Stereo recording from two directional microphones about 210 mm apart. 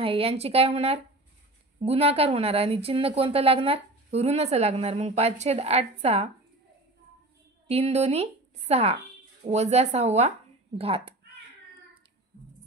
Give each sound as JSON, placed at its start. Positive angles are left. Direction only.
{"t": 0.0, "sound": "speech", "side_deg": -25}
{"t": 7.6, "sound": "a woman's voice", "side_deg": -30}